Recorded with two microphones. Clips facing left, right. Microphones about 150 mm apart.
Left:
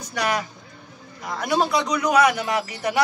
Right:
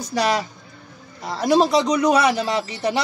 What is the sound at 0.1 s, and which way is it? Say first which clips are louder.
A man's voice: right 4 dB; 30° right (ahead or behind).